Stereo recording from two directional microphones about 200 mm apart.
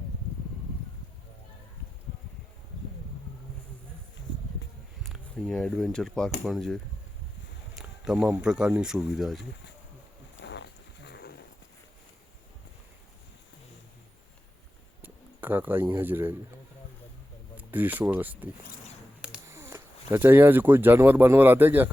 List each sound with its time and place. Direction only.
5.0 s speech: centre (ahead or behind)
10.4 s a sound: 60° left (ahead or behind)
15.0 s speech: 10° right (ahead or behind)
17.5 s speech: 10° right (ahead or behind)